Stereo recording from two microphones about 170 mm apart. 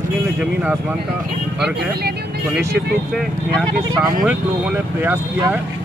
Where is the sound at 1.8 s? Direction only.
70° right (ahead or behind).